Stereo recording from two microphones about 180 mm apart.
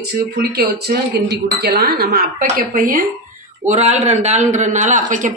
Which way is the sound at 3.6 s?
40° right (ahead or behind).